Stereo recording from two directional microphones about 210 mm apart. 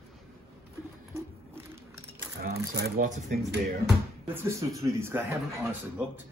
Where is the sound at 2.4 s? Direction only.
45° right (ahead or behind).